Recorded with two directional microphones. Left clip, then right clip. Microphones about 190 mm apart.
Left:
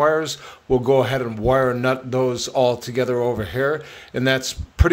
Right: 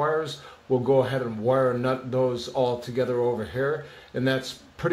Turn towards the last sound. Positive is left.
turn(degrees=35)  # may be behind; listen again after turning